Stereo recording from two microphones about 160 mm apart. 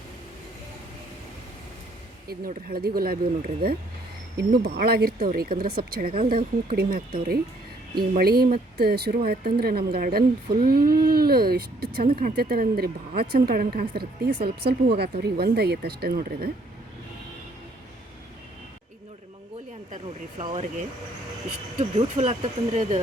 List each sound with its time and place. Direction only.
2.2 s a woman's voice: 65° right (ahead or behind)
4.4 s a woman's voice: 80° right
20.5 s speech: 45° right (ahead or behind)